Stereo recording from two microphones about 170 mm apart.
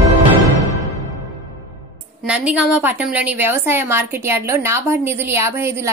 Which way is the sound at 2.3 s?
5° right (ahead or behind).